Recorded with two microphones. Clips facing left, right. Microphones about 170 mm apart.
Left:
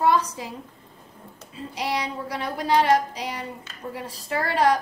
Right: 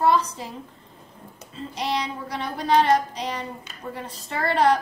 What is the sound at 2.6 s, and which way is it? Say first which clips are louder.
A woman's voice: right 1 dB; 10° left (ahead or behind).